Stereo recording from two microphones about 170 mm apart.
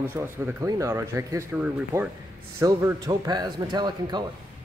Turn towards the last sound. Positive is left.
turn(degrees=-25)  # may be behind; listen again after turning